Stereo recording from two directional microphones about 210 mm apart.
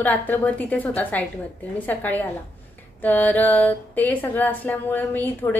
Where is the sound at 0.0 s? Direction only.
10° left (ahead or behind).